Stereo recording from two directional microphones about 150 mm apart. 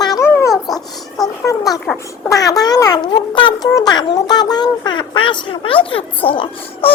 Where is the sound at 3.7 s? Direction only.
25° left (ahead or behind).